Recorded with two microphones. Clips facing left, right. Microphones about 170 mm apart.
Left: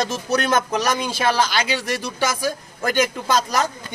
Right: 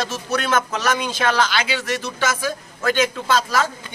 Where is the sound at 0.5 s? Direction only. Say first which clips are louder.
Left 1 dB; 15° left (ahead or behind).